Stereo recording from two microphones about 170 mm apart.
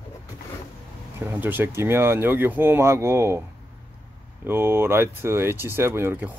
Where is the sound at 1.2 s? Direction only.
10° right (ahead or behind).